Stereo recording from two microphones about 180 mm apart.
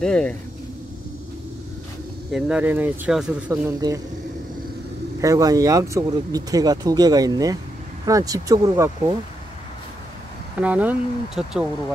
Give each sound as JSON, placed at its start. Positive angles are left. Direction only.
{"t": 0.0, "sound": "speech", "side_deg": 5}
{"t": 2.3, "sound": "speech", "side_deg": -5}
{"t": 3.8, "sound": "speech", "side_deg": -20}
{"t": 5.2, "sound": "speech", "side_deg": -20}
{"t": 10.6, "sound": "speech", "side_deg": -10}